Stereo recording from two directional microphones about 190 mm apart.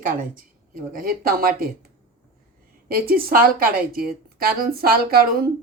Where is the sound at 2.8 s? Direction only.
50° right (ahead or behind).